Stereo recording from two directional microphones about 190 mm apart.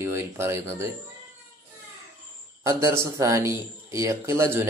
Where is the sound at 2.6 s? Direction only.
15° right (ahead or behind).